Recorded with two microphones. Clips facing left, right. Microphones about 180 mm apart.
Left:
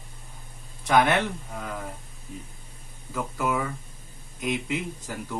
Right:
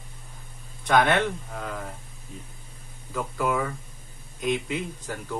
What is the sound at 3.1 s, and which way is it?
Speech, 5° left (ahead or behind).